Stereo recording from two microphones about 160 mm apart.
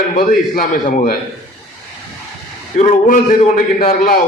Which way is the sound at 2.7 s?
55° left (ahead or behind).